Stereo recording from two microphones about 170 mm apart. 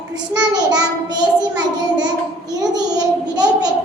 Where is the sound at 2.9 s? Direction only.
25° right (ahead or behind).